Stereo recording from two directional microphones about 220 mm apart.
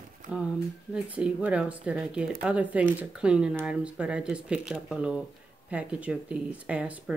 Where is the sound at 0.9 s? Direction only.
5° right (ahead or behind).